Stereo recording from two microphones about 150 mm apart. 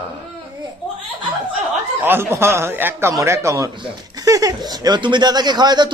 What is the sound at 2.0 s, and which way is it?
Speech, 15° right (ahead or behind).